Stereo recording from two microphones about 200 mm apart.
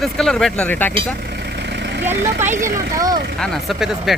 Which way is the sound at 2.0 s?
10° right (ahead or behind).